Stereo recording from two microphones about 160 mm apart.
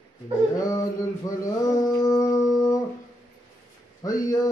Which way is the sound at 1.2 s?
20° left (ahead or behind).